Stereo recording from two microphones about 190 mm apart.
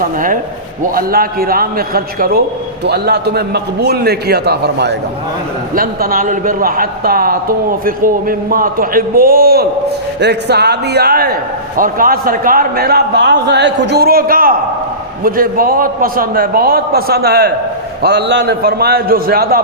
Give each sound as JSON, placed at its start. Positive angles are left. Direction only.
{"t": 0.0, "sound": "a man's voice", "side_deg": -45}
{"t": 5.7, "sound": "a man's voice", "side_deg": -50}